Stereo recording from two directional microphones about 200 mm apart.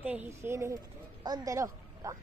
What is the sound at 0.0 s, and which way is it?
Speech, 5° right (ahead or behind).